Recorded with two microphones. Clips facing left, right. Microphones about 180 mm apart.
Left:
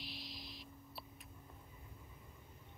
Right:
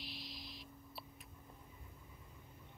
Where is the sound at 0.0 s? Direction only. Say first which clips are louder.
Even; centre (ahead or behind).